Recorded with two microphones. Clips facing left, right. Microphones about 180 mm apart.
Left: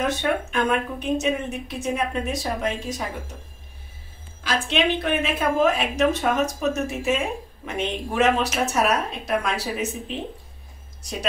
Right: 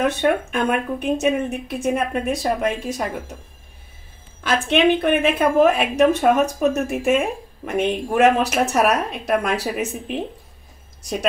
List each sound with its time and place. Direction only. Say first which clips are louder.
0.0 s speech: right 5 dB; 55° right (ahead or behind)
4.4 s a woman's voice: right 5 dB; 55° right (ahead or behind)